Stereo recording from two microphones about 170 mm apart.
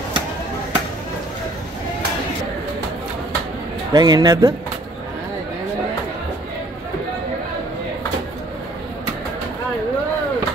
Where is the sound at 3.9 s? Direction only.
25° right (ahead or behind).